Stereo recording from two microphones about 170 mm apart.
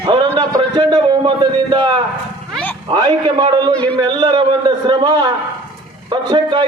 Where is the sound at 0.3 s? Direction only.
25° right (ahead or behind).